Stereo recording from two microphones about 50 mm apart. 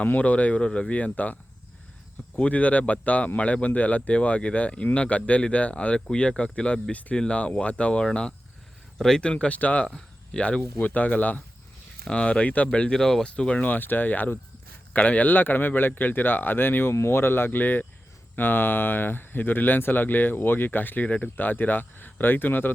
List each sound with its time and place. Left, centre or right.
0.0 s speech: left
2.5 s speech: left; by 9.2 s centre
9.2 s speech: left
9.8 s speech: centre
10.8 s speech: left
12.0 s speech: left
13.0 s speech: centre
13.2 s speech: left
13.7 s speech: left